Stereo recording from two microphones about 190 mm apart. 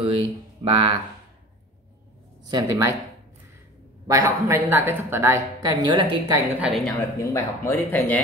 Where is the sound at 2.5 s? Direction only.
20° right (ahead or behind).